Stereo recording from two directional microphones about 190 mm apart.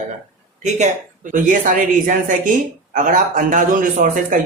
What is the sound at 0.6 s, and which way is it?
A man's voice, 40° right (ahead or behind).